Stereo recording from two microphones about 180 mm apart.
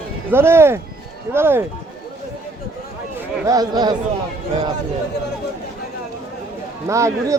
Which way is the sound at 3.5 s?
20° right (ahead or behind).